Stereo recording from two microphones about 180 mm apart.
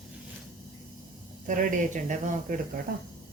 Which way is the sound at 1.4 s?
45° right (ahead or behind).